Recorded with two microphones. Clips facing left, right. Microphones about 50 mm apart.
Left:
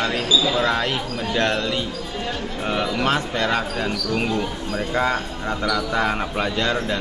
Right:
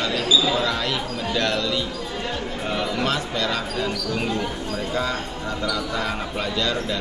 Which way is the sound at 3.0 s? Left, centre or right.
Left.